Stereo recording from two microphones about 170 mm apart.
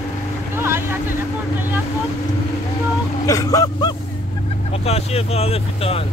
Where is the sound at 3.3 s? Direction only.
20° left (ahead or behind).